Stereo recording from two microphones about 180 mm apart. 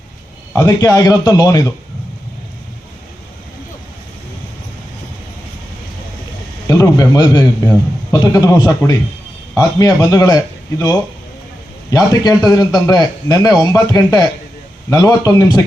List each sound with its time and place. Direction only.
0.5 s speech: 20° left (ahead or behind)
6.7 s speech: 20° left (ahead or behind)